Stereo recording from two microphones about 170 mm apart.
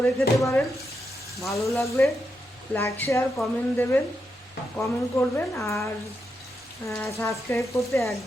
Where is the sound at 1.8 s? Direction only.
15° left (ahead or behind).